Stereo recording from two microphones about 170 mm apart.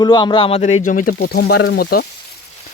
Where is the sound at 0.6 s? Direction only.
45° left (ahead or behind); by 2.0 s 65° left (ahead or behind).